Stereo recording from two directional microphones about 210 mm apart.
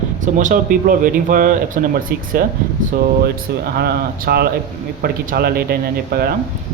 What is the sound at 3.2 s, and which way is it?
A man's voice, 50° right (ahead or behind).